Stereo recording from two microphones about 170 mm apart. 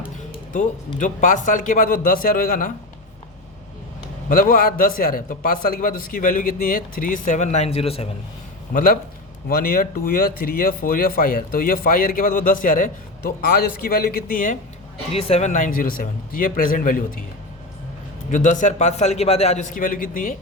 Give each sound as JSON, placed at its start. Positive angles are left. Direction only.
{"t": 0.9, "sound": "speech", "side_deg": 50}
{"t": 4.3, "sound": "a man's voice", "side_deg": 55}
{"t": 8.7, "sound": "a man's voice", "side_deg": 55}
{"t": 13.9, "sound": "a man's voice", "side_deg": 60}
{"t": 15.1, "sound": "speech", "side_deg": 35}
{"t": 18.3, "sound": "speech", "side_deg": 45}